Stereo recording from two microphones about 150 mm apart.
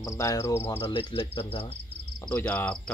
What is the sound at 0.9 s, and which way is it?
Speech, 30° left (ahead or behind).